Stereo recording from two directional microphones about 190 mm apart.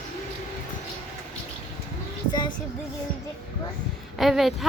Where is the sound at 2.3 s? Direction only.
20° left (ahead or behind).